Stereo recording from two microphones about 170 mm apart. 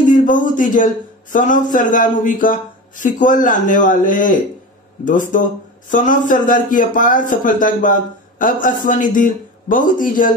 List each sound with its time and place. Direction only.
0.2 s a man's voice: 50° left (ahead or behind)